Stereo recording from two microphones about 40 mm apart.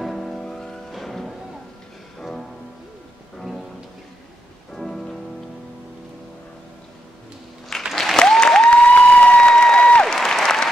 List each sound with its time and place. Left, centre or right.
0.0 s music: centre
4.7 s music: centre
7.9 s applause: centre
8.2 s applause: centre
8.8 s a sound: left
9.5 s applause: centre
10.1 s applause: centre